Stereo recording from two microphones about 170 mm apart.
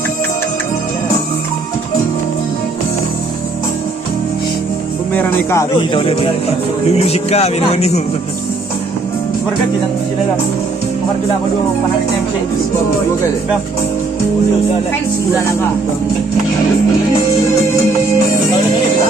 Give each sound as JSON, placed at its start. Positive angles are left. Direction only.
{"t": 5.1, "sound": "music", "side_deg": 15}
{"t": 5.9, "sound": "speech", "side_deg": 30}